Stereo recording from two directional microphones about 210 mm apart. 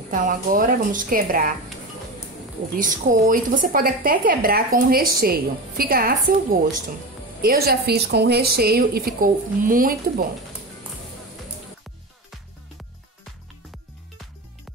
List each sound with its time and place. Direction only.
0.1 s a woman's voice: 40° right (ahead or behind)
2.7 s a woman's voice: 40° right (ahead or behind)
7.4 s speech: 50° right (ahead or behind)